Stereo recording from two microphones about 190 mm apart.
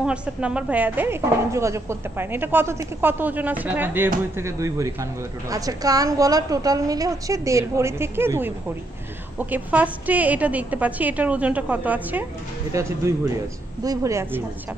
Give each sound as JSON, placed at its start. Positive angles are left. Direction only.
{"t": 0.0, "sound": "speech", "side_deg": -5}